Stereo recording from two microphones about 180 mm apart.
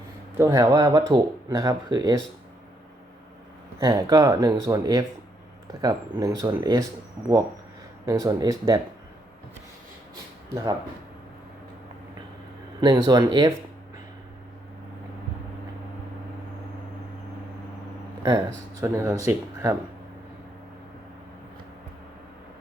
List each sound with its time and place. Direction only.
0.3 s speech: 20° right (ahead or behind)
3.8 s speech: 20° right (ahead or behind)
8.0 s speech: 20° right (ahead or behind)
10.5 s speech: 20° right (ahead or behind)
12.8 s speech: 25° right (ahead or behind)
18.2 s speech: 20° right (ahead or behind)